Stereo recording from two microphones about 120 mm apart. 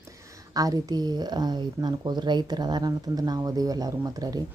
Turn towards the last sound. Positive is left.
turn(degrees=-30)  # may be behind; listen again after turning